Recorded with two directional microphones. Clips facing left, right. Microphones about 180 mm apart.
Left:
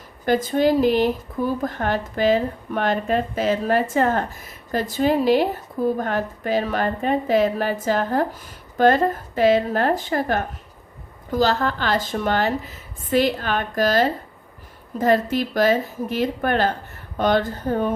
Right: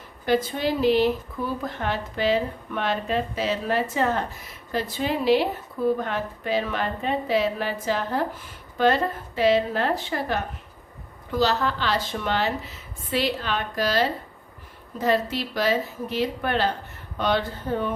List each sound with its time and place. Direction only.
0.3 s speech: 45° left (ahead or behind)